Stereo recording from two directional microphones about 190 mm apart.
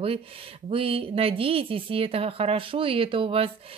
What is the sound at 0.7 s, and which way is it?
A woman's voice, 30° right (ahead or behind).